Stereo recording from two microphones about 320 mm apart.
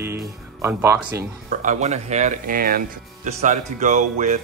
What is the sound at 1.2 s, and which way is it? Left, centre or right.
Speech, right.